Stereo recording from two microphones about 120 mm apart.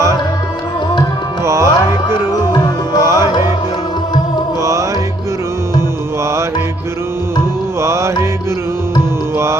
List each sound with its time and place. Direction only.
1.5 s music: 25° right (ahead or behind)
2.0 s music: 35° left (ahead or behind)
3.1 s music: 25° right (ahead or behind)
4.6 s music: 25° right (ahead or behind)
7.8 s music: 25° right (ahead or behind)